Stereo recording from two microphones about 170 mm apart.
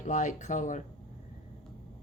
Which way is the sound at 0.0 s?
45° left (ahead or behind).